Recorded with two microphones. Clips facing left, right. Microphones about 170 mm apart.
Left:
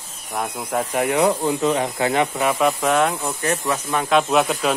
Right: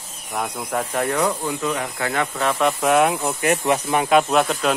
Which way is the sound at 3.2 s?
20° right (ahead or behind).